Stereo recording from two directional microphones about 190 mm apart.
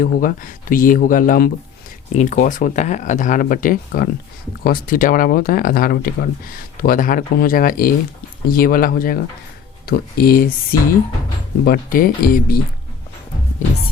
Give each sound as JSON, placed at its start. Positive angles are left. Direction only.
{"t": 0.0, "sound": "speech", "side_deg": 45}